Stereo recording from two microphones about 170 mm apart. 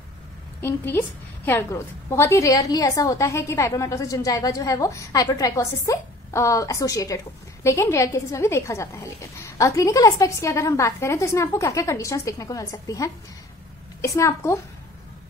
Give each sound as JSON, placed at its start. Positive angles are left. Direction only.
{"t": 0.6, "sound": "a woman's voice", "side_deg": 15}